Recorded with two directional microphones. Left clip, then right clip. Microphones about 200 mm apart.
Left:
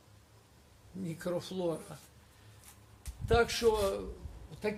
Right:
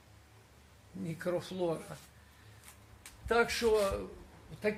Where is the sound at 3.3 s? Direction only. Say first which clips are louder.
Left 1 dB; 45° left (ahead or behind).